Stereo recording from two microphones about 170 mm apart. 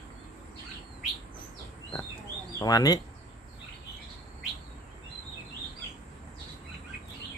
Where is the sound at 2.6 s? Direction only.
20° left (ahead or behind).